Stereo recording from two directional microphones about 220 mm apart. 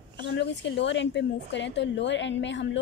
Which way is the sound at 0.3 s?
55° left (ahead or behind).